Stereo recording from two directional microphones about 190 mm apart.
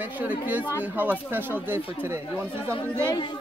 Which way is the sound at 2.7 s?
25° left (ahead or behind).